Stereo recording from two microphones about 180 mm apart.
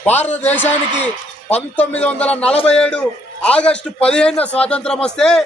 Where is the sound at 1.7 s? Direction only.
10° left (ahead or behind).